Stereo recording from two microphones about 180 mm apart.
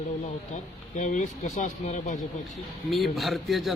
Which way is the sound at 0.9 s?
45° left (ahead or behind).